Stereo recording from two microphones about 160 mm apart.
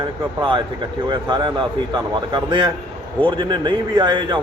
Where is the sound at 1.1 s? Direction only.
30° right (ahead or behind).